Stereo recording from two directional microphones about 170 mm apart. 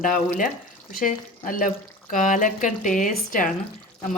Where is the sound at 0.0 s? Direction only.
50° left (ahead or behind).